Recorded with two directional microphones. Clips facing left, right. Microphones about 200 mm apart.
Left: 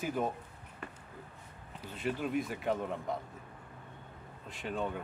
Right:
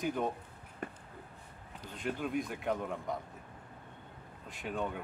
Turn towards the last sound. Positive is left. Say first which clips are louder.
# left 1 dB
turn(degrees=0)  # may be behind; listen again after turning